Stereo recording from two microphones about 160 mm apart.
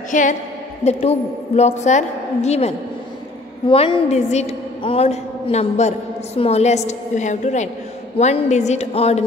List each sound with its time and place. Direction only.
0.1 s a woman's voice: 50° left (ahead or behind)